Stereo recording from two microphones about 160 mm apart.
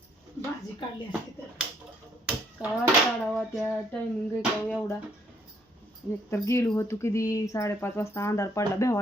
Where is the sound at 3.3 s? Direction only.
5° left (ahead or behind).